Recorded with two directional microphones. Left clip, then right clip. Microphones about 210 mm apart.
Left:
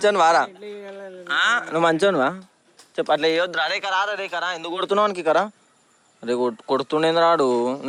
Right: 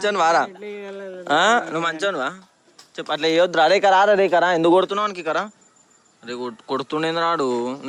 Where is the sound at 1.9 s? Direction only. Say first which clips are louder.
Left 4 dB; 25° left (ahead or behind).